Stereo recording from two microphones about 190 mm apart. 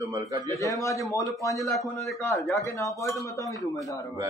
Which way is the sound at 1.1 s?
20° left (ahead or behind).